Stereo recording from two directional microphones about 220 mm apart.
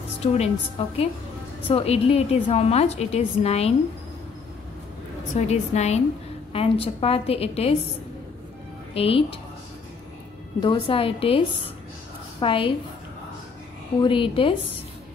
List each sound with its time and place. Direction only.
0.2 s a woman's voice: 30° left (ahead or behind)
5.3 s a woman's voice: 30° left (ahead or behind)
8.9 s a woman's voice: 25° left (ahead or behind)
10.6 s a woman's voice: 25° left (ahead or behind)
14.0 s a woman's voice: 25° left (ahead or behind)